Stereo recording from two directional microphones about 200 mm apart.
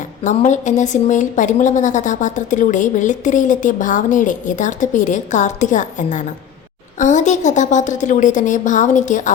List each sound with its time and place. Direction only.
0.3 s speech: 35° left (ahead or behind)